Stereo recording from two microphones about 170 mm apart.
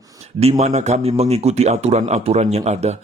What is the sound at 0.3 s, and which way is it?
A man's voice, 40° right (ahead or behind).